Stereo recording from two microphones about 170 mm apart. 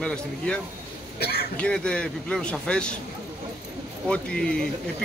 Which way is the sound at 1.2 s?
70° left (ahead or behind).